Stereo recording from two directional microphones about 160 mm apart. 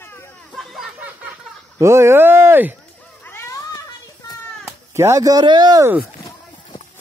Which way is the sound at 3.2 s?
15° left (ahead or behind).